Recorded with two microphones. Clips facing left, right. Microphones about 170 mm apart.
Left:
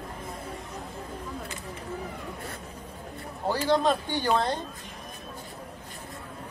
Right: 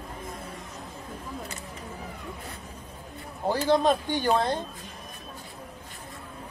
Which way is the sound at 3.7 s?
15° right (ahead or behind).